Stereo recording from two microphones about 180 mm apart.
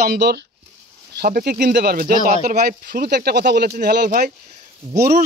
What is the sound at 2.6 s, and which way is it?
Speech, 65° right (ahead or behind).